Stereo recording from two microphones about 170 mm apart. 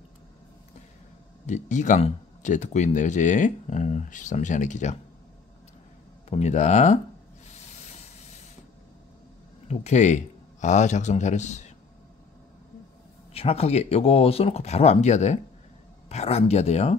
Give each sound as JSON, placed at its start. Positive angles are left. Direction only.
{"t": 1.4, "sound": "speech", "side_deg": 45}
{"t": 6.3, "sound": "speech", "side_deg": 40}
{"t": 9.7, "sound": "speech", "side_deg": 40}
{"t": 13.3, "sound": "speech", "side_deg": 35}